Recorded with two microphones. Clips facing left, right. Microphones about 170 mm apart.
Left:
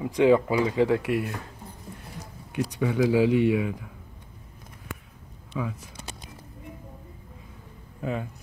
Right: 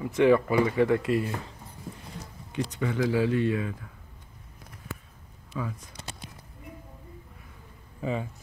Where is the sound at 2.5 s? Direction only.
10° left (ahead or behind).